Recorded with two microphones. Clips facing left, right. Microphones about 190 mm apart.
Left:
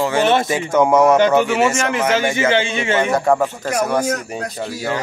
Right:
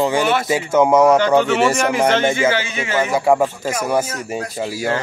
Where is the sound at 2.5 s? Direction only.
25° left (ahead or behind).